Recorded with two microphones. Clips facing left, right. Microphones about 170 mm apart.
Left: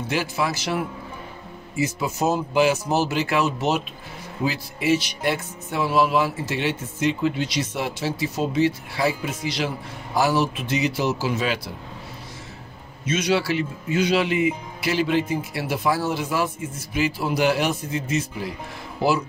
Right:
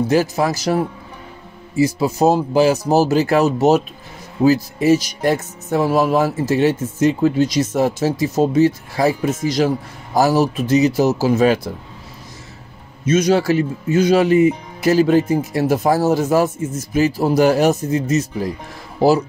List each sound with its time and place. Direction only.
0.1 s speech: 40° right (ahead or behind)
13.0 s speech: 40° right (ahead or behind)